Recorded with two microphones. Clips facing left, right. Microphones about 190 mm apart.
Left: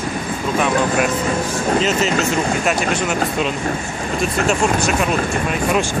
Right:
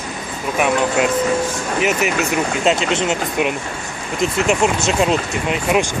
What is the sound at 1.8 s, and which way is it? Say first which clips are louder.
Speech: even; 15° right (ahead or behind).